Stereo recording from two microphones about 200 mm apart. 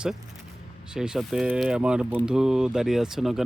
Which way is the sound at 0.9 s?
5° right (ahead or behind).